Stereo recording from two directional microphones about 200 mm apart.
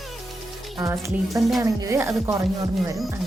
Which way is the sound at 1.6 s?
15° right (ahead or behind).